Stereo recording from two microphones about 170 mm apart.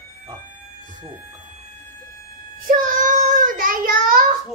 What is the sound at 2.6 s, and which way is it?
Child singing, 50° right (ahead or behind).